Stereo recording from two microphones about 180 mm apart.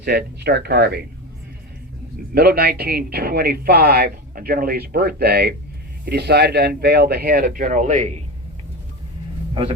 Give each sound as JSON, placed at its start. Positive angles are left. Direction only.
{"t": 0.0, "sound": "a man's voice", "side_deg": -65}
{"t": 2.3, "sound": "a man's voice", "side_deg": -60}